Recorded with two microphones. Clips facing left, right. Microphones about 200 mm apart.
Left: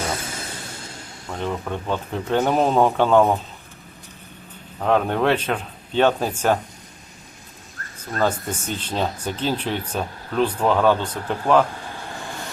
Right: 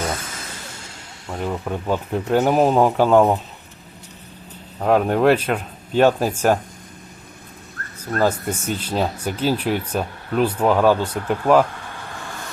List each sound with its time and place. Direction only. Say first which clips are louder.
1.3 s speech: right 1 dB; 5° right (ahead or behind)
4.8 s speech: right 3 dB; 5° right (ahead or behind)
7.8 s a sound: right 2 dB; 60° right (ahead or behind)
8.2 s speech: right 2 dB; 10° right (ahead or behind)